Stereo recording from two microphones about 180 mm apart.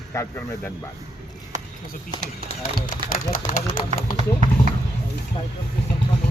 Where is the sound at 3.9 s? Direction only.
40° right (ahead or behind).